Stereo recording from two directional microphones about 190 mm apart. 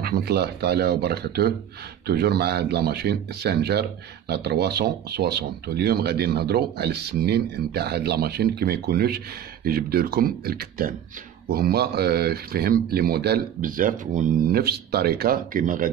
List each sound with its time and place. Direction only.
0.0 s speech: 55° right (ahead or behind)